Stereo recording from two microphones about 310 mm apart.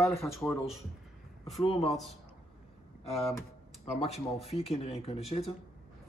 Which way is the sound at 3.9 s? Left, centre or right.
Centre.